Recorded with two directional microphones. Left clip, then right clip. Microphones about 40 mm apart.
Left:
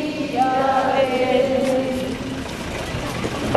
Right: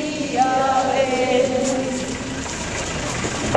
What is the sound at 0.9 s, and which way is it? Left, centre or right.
Chant, centre.